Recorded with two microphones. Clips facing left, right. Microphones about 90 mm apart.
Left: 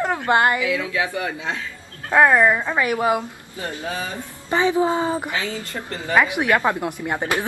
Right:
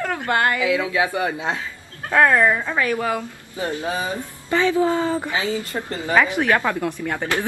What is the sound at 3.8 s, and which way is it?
Speech, 20° right (ahead or behind).